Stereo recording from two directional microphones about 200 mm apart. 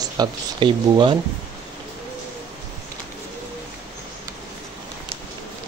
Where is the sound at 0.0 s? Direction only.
20° right (ahead or behind).